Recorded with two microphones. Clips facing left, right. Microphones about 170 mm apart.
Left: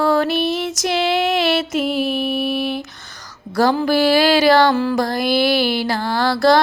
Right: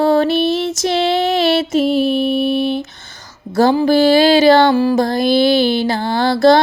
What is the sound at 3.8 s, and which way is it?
Music, 25° right (ahead or behind).